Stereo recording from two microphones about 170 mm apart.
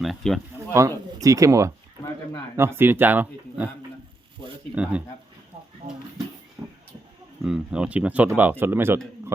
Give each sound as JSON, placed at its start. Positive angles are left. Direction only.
{"t": 0.0, "sound": "speech", "side_deg": 0}
{"t": 0.7, "sound": "speech", "side_deg": -20}
{"t": 4.7, "sound": "speech", "side_deg": -5}
{"t": 6.6, "sound": "a sound", "side_deg": -20}
{"t": 7.4, "sound": "speech", "side_deg": -5}